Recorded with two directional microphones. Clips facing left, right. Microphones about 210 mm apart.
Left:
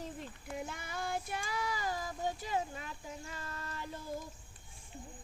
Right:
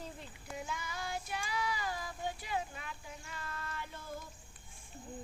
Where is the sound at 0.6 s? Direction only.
55° left (ahead or behind); by 4.0 s 40° left (ahead or behind).